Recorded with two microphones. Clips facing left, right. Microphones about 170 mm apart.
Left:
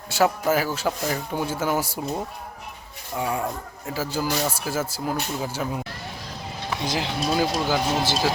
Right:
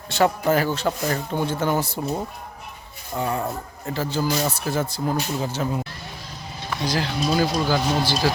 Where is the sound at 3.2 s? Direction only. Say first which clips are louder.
Right 1 dB; 10° left (ahead or behind).